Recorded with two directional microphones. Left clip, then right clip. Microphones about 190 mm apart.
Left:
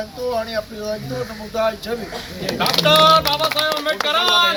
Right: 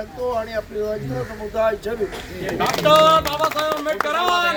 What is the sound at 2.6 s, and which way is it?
Speech, 10° right (ahead or behind).